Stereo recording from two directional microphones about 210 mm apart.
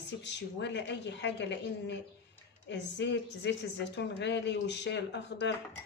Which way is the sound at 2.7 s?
55° left (ahead or behind).